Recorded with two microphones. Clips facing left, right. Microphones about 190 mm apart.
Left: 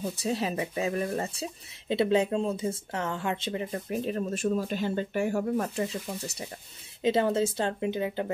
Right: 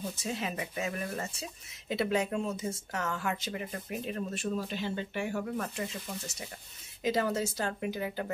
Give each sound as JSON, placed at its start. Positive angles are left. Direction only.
{"t": 0.2, "sound": "speech", "side_deg": 35}
{"t": 7.0, "sound": "speech", "side_deg": 25}